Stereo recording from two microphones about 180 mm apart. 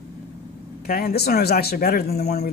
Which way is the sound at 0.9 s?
60° left (ahead or behind).